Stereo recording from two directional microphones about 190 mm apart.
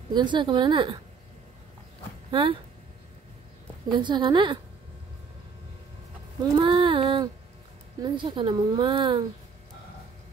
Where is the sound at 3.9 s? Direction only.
25° right (ahead or behind).